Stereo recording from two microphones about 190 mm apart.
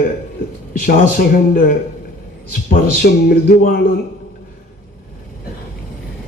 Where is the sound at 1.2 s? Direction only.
50° left (ahead or behind).